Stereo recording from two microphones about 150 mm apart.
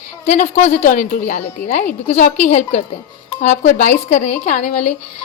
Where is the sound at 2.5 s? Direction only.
55° left (ahead or behind).